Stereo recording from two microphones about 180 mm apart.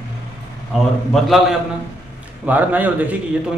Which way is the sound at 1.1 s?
Centre (ahead or behind).